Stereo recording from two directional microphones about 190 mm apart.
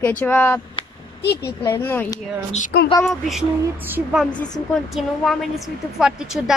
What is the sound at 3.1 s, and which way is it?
A woman's voice, centre (ahead or behind).